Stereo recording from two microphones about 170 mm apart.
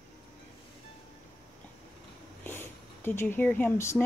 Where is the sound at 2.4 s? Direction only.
15° left (ahead or behind).